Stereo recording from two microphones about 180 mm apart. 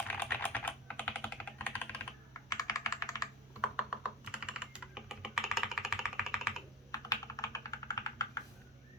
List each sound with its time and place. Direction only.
0.1 s typing: 10° left (ahead or behind)
2.5 s computer keyboard: 20° left (ahead or behind)
3.6 s computer keyboard: 5° right (ahead or behind)
6.9 s computer keyboard: 20° left (ahead or behind)